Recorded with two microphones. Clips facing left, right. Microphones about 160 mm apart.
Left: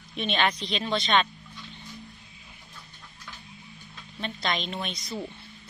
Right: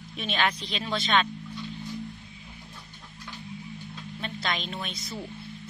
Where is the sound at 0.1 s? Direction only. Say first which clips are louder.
Left 2 dB; 5° right (ahead or behind).